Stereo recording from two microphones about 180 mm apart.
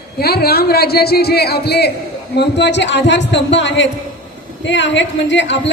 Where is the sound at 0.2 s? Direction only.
60° left (ahead or behind).